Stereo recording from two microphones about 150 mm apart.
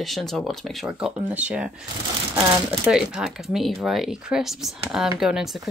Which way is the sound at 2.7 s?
5° right (ahead or behind).